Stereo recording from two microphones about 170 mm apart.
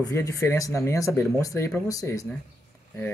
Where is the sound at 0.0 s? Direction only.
20° left (ahead or behind).